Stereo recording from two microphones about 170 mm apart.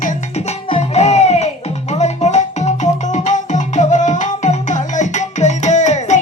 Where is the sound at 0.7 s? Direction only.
40° left (ahead or behind).